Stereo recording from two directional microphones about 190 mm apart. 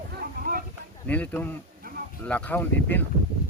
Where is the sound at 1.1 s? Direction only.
10° left (ahead or behind).